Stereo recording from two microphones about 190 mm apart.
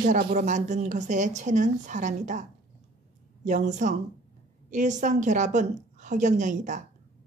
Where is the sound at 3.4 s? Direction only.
40° right (ahead or behind).